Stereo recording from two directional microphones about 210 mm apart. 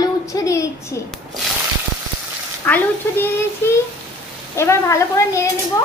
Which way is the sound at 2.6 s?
10° left (ahead or behind).